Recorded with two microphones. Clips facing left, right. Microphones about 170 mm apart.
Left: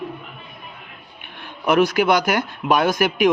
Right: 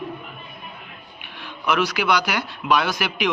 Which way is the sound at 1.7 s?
50° left (ahead or behind).